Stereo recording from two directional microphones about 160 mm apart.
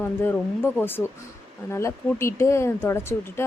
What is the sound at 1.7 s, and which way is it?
Speech, 15° left (ahead or behind).